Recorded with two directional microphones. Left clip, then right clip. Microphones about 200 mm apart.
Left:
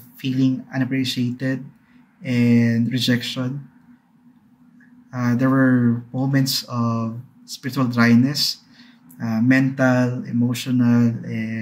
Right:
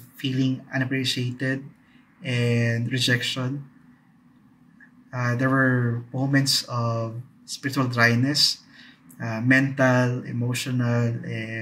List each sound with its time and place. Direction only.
0.2 s speech: 10° right (ahead or behind)
5.1 s speech: 5° right (ahead or behind)